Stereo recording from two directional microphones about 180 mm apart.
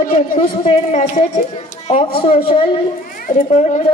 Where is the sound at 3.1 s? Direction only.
50° left (ahead or behind).